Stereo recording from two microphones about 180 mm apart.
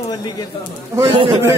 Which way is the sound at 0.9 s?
25° right (ahead or behind).